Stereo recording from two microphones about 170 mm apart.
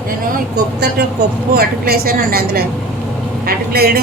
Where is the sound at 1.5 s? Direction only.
60° right (ahead or behind).